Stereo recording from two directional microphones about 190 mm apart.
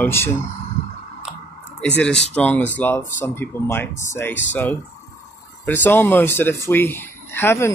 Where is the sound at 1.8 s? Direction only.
5° left (ahead or behind).